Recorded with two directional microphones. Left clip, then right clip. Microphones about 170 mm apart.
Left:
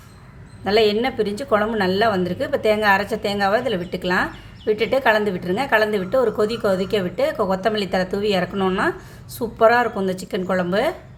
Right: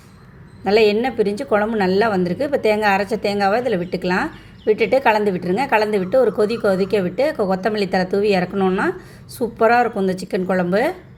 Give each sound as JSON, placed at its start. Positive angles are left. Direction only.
{"t": 0.6, "sound": "a woman's voice", "side_deg": -10}